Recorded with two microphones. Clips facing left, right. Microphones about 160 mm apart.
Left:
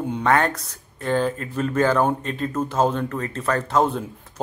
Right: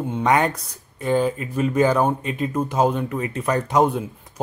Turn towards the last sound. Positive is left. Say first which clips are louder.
# right 2 dB
turn(degrees=-15)  # may be behind; listen again after turning